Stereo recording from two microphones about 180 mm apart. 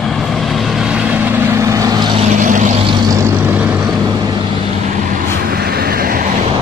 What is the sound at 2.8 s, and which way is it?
Vehicle, 25° right (ahead or behind).